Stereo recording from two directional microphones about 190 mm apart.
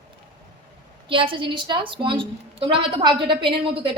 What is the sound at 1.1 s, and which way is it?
A woman's voice, 25° right (ahead or behind).